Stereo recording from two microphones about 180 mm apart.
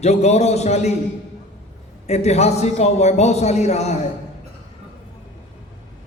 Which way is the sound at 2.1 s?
35° left (ahead or behind).